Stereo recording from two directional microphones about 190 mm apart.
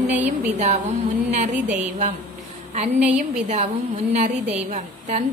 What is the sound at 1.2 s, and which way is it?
Speech, 40° right (ahead or behind).